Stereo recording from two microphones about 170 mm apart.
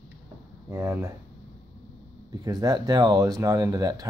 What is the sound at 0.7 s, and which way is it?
Speech, 15° right (ahead or behind).